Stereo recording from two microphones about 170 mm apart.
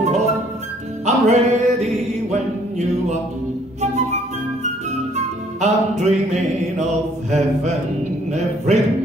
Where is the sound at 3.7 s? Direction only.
40° right (ahead or behind).